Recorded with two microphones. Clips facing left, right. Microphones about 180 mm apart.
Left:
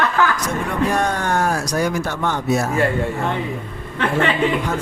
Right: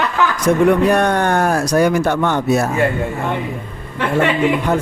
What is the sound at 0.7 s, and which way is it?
Speech, 65° right (ahead or behind).